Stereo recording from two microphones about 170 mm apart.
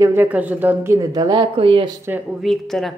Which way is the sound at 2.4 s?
Centre (ahead or behind).